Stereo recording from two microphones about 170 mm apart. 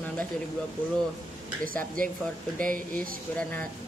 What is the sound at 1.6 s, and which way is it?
Speech, 55° right (ahead or behind).